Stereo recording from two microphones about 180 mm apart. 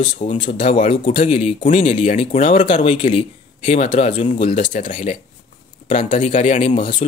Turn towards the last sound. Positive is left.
turn(degrees=40)  # may be behind; listen again after turning